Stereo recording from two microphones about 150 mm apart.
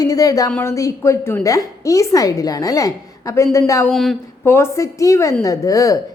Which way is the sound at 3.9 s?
Centre (ahead or behind).